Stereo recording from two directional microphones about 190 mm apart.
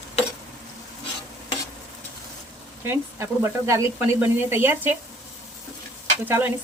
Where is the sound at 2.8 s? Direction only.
15° right (ahead or behind).